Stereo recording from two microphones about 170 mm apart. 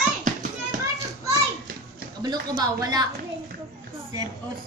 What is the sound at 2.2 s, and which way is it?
Speech, 25° right (ahead or behind).